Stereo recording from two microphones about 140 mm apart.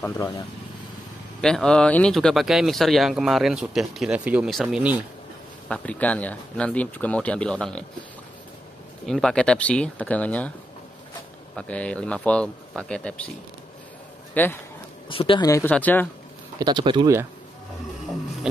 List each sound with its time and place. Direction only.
1.4 s speech: 5° left (ahead or behind)
5.7 s speech: 10° left (ahead or behind)
9.0 s speech: 5° left (ahead or behind)
11.5 s speech: 10° left (ahead or behind)
14.3 s speech: 15° left (ahead or behind)
15.0 s speech: 40° left (ahead or behind)
15.4 s speech: 20° left (ahead or behind)
15.7 s speech: 10° left (ahead or behind)
16.5 s speech: 30° right (ahead or behind)